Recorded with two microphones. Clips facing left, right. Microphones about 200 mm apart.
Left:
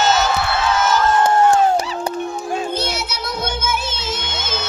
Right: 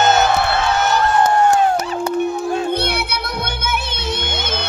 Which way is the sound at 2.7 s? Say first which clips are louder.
Right 3 dB; 60° right (ahead or behind).